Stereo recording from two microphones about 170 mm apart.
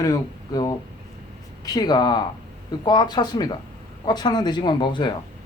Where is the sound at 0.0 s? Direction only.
20° left (ahead or behind).